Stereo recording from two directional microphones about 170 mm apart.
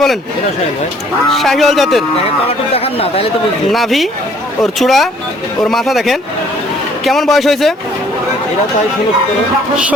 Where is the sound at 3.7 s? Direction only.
Centre (ahead or behind).